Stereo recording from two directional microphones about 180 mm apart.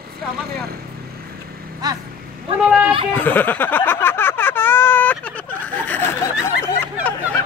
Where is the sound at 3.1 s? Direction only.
10° left (ahead or behind).